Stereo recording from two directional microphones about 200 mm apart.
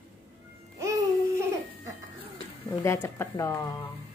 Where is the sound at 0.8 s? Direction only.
15° right (ahead or behind).